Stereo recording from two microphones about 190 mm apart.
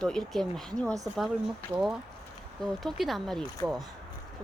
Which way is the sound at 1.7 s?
10° right (ahead or behind).